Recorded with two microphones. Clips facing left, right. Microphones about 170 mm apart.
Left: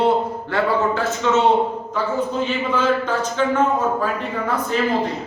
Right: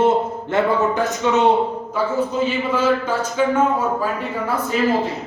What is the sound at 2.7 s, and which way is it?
Speech, 10° right (ahead or behind).